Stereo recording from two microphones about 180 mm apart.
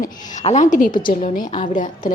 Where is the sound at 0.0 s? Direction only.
40° left (ahead or behind).